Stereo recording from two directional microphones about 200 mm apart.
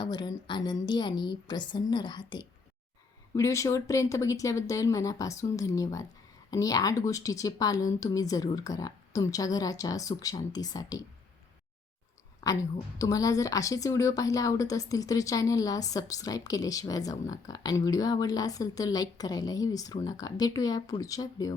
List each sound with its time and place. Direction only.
0.0 s a woman's voice: 20° left (ahead or behind)
12.4 s a woman's voice: 15° left (ahead or behind)